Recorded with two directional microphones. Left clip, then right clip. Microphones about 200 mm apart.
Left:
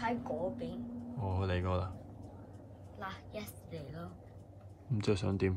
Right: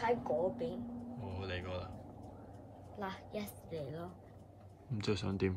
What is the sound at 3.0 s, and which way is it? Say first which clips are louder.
A woman's voice: right 1 dB; 55° right (ahead or behind).